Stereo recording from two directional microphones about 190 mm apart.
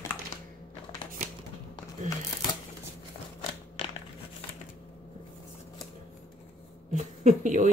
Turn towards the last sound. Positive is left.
turn(degrees=-40)  # may be behind; listen again after turning